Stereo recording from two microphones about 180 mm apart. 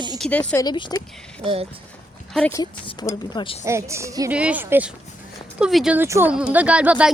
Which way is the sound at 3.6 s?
15° right (ahead or behind).